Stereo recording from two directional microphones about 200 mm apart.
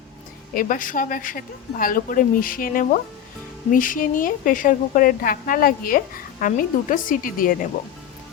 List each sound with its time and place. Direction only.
0.5 s a woman's voice: 45° left (ahead or behind)